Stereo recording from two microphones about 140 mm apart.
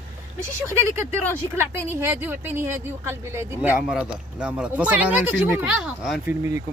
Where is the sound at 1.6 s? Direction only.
15° right (ahead or behind).